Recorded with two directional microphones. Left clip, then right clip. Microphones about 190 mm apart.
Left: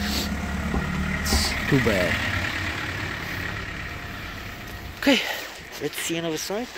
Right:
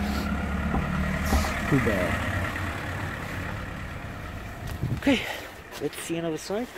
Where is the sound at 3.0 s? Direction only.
45° right (ahead or behind).